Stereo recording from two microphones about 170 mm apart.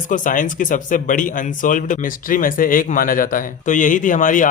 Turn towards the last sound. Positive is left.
turn(degrees=50)  # may be behind; listen again after turning